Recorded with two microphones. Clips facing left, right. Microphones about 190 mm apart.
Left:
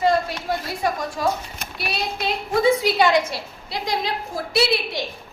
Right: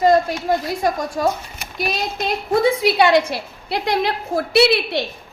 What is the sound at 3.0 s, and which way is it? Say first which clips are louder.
A woman's voice: right 3 dB; 65° right (ahead or behind).